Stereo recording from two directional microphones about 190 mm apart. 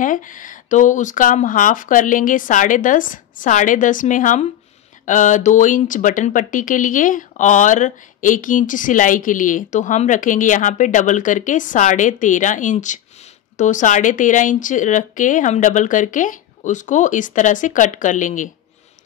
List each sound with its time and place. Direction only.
0.0 s speech: 45° left (ahead or behind)